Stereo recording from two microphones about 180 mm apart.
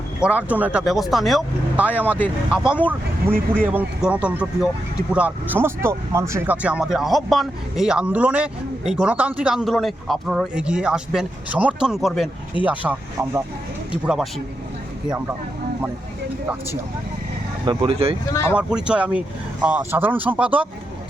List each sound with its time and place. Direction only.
0.3 s speech: 10° right (ahead or behind)
2.0 s speech: 10° left (ahead or behind)
2.5 s speech: 5° right (ahead or behind)
17.7 s speech: 30° right (ahead or behind)
18.3 s speech: 15° left (ahead or behind)
18.5 s speech: 5° right (ahead or behind)